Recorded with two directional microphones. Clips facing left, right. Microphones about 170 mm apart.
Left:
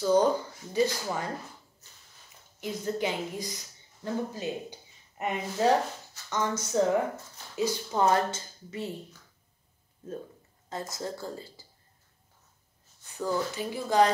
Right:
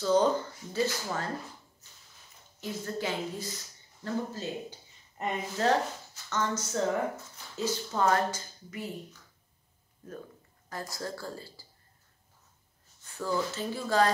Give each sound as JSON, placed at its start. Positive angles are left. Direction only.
{"t": 0.0, "sound": "speech", "side_deg": 10}
{"t": 2.6, "sound": "speech", "side_deg": 15}
{"t": 10.7, "sound": "speech", "side_deg": 20}
{"t": 13.2, "sound": "speech", "side_deg": 15}